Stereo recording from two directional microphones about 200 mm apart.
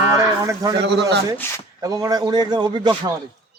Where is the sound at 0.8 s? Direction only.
55° right (ahead or behind).